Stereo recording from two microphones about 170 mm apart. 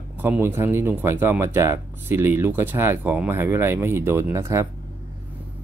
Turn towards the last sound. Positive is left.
turn(degrees=-15)  # may be behind; listen again after turning